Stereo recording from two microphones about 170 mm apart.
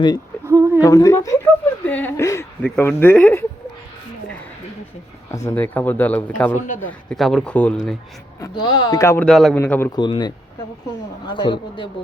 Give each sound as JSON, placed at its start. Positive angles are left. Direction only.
{"t": 0.4, "sound": "a sound", "side_deg": -15}
{"t": 0.8, "sound": "speech", "side_deg": 20}
{"t": 5.3, "sound": "speech", "side_deg": 15}
{"t": 8.4, "sound": "speech", "side_deg": 25}
{"t": 9.2, "sound": "speech", "side_deg": 0}
{"t": 9.9, "sound": "speech", "side_deg": 25}